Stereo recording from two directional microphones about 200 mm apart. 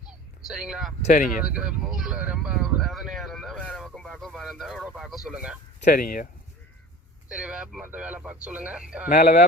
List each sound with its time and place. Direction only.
0.1 s a sound: 5° right (ahead or behind)
1.1 s speech: 45° left (ahead or behind)
1.5 s speech: 5° right (ahead or behind)
5.8 s speech: 45° left (ahead or behind)
7.3 s speech: 5° right (ahead or behind)
9.0 s speech: 50° left (ahead or behind)